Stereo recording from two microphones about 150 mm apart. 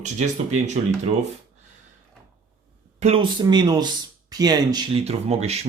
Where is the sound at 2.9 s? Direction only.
45° right (ahead or behind).